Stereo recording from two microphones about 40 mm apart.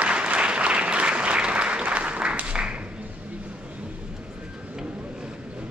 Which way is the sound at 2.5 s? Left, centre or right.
Right.